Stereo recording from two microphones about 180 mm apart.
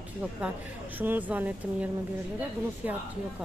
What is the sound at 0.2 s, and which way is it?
Speech, 10° right (ahead or behind).